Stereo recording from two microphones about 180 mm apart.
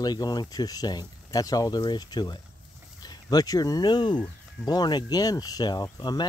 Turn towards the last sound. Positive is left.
turn(degrees=20)  # may be behind; listen again after turning